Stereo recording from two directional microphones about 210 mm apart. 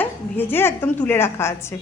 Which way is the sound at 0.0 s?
10° left (ahead or behind).